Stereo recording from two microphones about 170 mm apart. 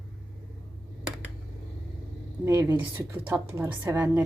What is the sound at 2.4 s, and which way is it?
A woman's voice, 20° right (ahead or behind).